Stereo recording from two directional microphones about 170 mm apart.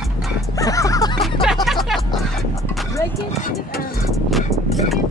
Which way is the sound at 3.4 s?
55° left (ahead or behind).